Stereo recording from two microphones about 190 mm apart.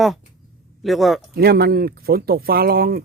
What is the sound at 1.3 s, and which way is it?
Speech, 55° right (ahead or behind).